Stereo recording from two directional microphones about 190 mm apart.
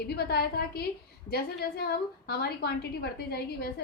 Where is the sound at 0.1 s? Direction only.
55° left (ahead or behind).